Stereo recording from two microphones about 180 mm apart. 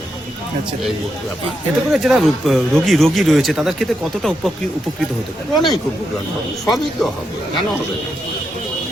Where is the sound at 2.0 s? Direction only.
Centre (ahead or behind).